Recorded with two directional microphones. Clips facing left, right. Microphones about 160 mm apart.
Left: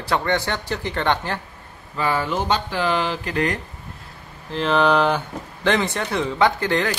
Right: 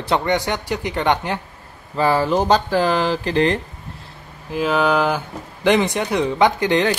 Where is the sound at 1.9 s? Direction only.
35° right (ahead or behind).